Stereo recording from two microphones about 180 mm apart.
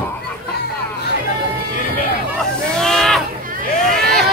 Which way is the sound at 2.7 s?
Centre (ahead or behind).